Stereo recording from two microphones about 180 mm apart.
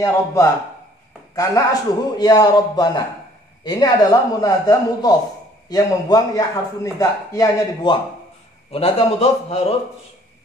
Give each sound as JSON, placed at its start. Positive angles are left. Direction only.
{"t": 0.0, "sound": "a man's voice", "side_deg": 15}
{"t": 8.7, "sound": "a man's voice", "side_deg": 35}